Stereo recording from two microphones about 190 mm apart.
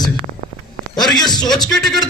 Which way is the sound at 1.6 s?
Centre (ahead or behind).